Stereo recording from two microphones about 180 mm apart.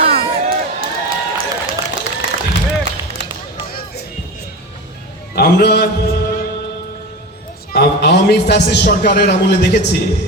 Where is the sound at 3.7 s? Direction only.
55° left (ahead or behind).